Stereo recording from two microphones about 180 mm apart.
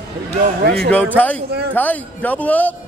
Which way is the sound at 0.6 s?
60° right (ahead or behind).